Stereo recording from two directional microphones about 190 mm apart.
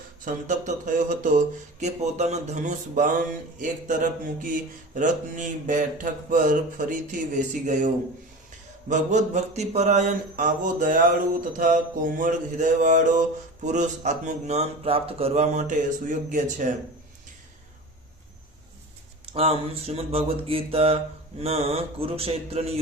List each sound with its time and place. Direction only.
0.3 s mantra: 40° right (ahead or behind)
8.9 s mantra: 40° right (ahead or behind)
19.3 s mantra: 30° right (ahead or behind)